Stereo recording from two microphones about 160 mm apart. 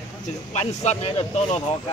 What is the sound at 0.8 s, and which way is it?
Speech, 40° left (ahead or behind).